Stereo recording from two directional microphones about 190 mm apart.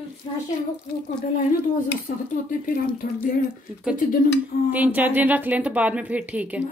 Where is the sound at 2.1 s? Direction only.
45° left (ahead or behind).